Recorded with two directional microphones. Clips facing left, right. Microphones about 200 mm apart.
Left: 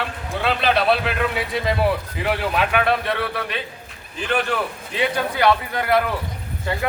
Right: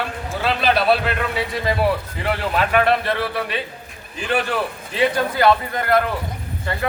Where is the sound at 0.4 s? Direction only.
Centre (ahead or behind).